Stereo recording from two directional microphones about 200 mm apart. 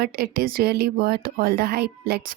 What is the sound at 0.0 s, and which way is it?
Speech, 50° right (ahead or behind).